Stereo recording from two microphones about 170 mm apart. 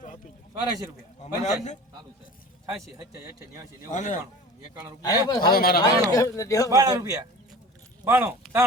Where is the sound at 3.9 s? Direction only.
45° left (ahead or behind).